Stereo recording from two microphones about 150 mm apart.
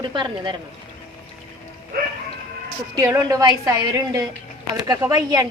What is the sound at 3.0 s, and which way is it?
A woman's voice, 20° right (ahead or behind).